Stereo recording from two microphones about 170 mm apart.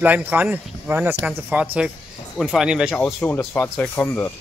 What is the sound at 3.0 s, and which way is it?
Speech, 15° left (ahead or behind).